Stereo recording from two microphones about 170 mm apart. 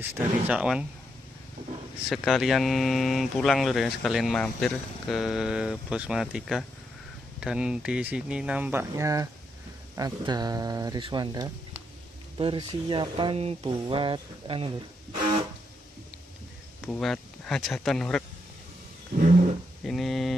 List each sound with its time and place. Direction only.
0.1 s speech: 5° right (ahead or behind)
2.0 s speech: centre (ahead or behind); by 14.7 s 30° right (ahead or behind)
16.8 s speech: 5° left (ahead or behind)
19.8 s a sound: centre (ahead or behind)